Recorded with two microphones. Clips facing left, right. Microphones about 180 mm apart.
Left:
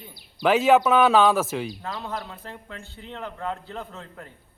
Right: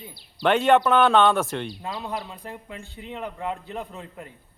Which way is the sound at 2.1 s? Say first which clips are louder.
Right 1 dB; 15° right (ahead or behind).